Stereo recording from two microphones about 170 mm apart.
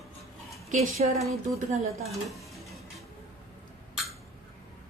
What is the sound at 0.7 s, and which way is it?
A woman's voice, 45° right (ahead or behind).